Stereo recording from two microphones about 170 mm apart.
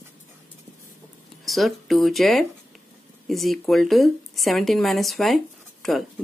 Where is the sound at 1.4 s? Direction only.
Centre (ahead or behind).